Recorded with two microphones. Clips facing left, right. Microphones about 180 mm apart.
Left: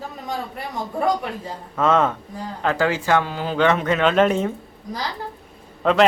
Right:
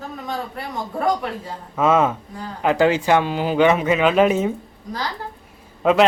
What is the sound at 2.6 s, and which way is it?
Speech, 20° right (ahead or behind).